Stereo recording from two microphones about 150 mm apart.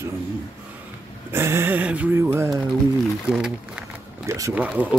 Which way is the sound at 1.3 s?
15° right (ahead or behind).